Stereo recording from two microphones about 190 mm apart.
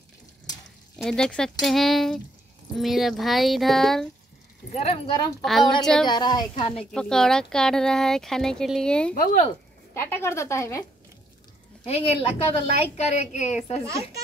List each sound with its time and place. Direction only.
0.9 s speech: centre (ahead or behind)
4.7 s a woman's voice: 30° left (ahead or behind)
5.4 s speech: centre (ahead or behind)
6.0 s speech: 20° left (ahead or behind)
6.9 s speech: 5° left (ahead or behind)
9.1 s speech: 45° left (ahead or behind)
9.9 s a woman's voice: 15° left (ahead or behind)
11.8 s a woman's voice: 30° left (ahead or behind)
13.8 s speech: 15° right (ahead or behind)